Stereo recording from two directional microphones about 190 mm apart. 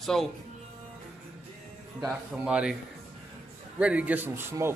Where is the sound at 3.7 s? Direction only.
5° right (ahead or behind).